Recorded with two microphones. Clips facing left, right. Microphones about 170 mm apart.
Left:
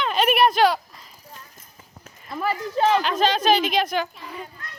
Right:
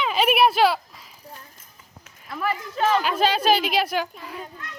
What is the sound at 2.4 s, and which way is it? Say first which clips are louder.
Speech: left 2 dB; 30° left (ahead or behind).